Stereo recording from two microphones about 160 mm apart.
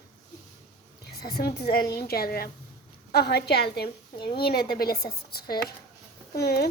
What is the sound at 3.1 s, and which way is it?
Speech, 85° left.